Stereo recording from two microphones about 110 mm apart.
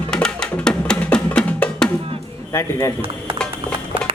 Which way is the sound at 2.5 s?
25° left (ahead or behind).